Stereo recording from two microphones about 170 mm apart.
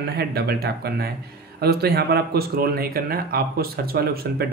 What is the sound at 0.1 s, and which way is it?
Speech, 70° right (ahead or behind).